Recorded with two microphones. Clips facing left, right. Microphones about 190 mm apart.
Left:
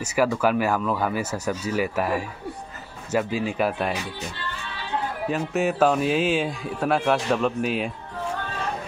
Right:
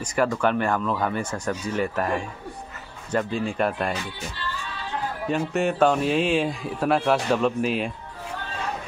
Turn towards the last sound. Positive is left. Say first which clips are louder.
# right 1 dB
turn(degrees=0)  # may be behind; listen again after turning